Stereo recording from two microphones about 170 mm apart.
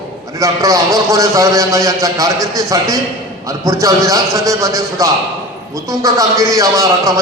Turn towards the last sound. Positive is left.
turn(degrees=-20)  # may be behind; listen again after turning